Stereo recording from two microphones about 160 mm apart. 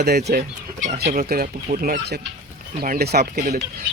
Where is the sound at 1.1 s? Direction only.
60° right (ahead or behind).